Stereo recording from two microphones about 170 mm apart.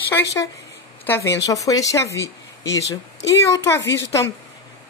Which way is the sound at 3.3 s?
20° left (ahead or behind).